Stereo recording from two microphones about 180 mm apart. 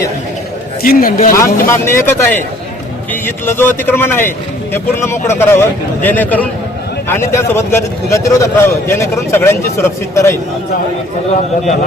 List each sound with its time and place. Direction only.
0.8 s a man's voice: 55° left (ahead or behind)
1.4 s a man's voice: 15° left (ahead or behind)